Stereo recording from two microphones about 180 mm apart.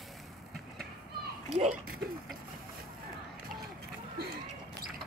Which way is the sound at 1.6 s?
45° right (ahead or behind).